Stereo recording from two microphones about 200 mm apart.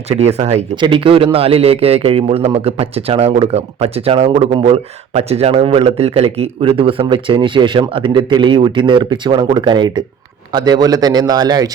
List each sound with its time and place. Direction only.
0.1 s a man's voice: 30° right (ahead or behind)